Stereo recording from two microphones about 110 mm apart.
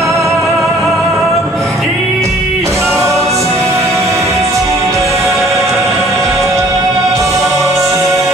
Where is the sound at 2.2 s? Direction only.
25° right (ahead or behind).